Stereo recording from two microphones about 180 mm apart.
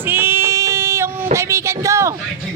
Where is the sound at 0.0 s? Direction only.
10° right (ahead or behind).